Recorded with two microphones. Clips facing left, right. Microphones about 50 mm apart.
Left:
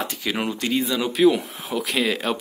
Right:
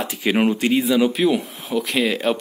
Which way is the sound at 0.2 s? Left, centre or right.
Right.